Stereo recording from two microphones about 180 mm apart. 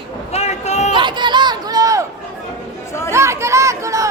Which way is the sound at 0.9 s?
25° right (ahead or behind).